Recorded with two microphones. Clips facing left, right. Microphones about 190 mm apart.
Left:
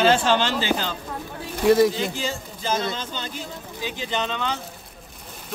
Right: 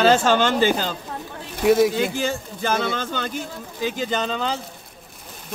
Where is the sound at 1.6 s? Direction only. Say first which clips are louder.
Even; centre (ahead or behind).